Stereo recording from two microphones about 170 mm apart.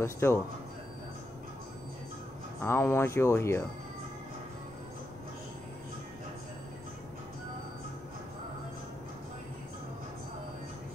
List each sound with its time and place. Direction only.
0.0 s speech: 15° left (ahead or behind)
2.6 s speech: 15° left (ahead or behind)